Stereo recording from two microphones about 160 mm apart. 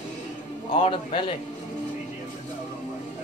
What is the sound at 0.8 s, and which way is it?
Speech, 35° left (ahead or behind).